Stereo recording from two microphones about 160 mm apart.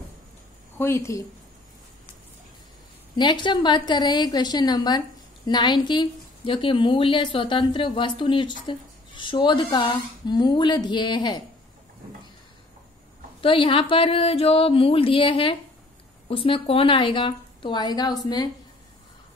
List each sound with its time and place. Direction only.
0.7 s speech: 15° left (ahead or behind)
3.2 s a woman's voice: 30° left (ahead or behind)
13.4 s a woman's voice: 35° left (ahead or behind)